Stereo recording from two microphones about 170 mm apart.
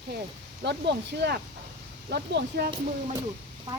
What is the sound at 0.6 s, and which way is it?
A woman's voice, 85° right.